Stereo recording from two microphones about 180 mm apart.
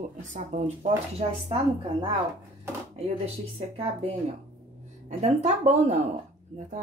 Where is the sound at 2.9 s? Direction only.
35° right (ahead or behind).